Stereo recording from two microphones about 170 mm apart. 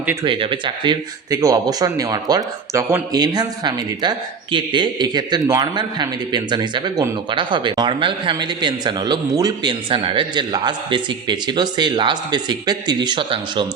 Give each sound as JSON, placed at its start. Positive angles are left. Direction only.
{"t": 0.0, "sound": "speech", "side_deg": -10}
{"t": 0.3, "sound": "speech", "side_deg": -30}